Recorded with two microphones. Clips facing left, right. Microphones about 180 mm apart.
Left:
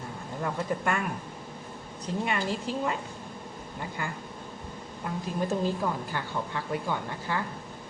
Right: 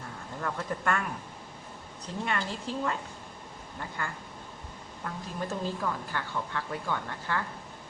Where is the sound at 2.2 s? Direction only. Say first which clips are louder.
Left 2 dB; 10° left (ahead or behind).